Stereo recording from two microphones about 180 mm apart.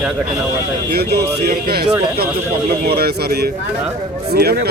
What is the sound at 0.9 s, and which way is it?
Speech, 65° right (ahead or behind).